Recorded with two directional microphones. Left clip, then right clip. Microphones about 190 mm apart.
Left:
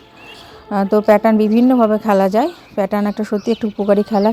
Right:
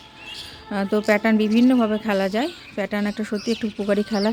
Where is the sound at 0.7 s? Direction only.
20° left (ahead or behind).